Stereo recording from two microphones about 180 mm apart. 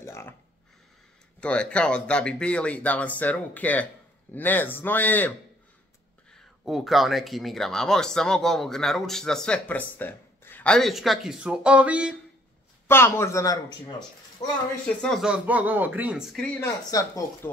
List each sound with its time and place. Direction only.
0.0 s a sound: 15° left (ahead or behind)
1.4 s speech: 5° left (ahead or behind)
6.6 s speech: centre (ahead or behind)
12.8 s speech: 15° left (ahead or behind)
15.0 s speech: centre (ahead or behind); by 17.5 s 15° left (ahead or behind)